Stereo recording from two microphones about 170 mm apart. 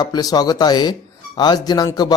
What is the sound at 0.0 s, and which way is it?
A man's voice, 25° left (ahead or behind).